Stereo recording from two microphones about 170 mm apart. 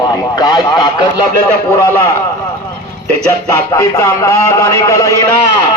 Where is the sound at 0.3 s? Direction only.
25° left (ahead or behind).